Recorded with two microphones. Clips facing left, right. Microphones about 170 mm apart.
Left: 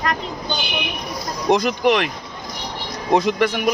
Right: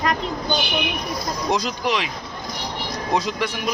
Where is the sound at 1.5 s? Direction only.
55° left (ahead or behind).